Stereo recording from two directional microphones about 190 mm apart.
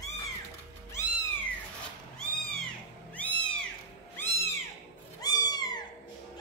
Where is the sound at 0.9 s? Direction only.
15° left (ahead or behind).